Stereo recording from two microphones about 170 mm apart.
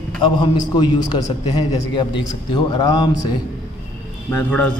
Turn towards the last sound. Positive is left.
turn(degrees=10)  # may be behind; listen again after turning